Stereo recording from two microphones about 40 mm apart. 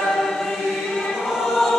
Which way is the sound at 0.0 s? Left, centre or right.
Centre.